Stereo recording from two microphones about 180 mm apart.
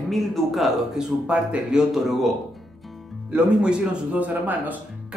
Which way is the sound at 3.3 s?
5° right (ahead or behind).